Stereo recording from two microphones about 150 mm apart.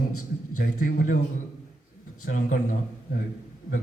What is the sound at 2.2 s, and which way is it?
Speech, 65° left (ahead or behind).